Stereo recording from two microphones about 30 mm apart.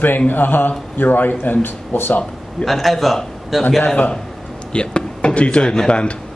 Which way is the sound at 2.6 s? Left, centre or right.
Centre.